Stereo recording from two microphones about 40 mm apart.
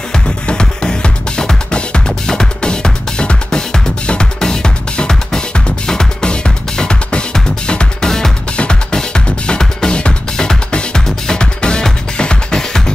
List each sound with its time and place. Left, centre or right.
0.1 s music: left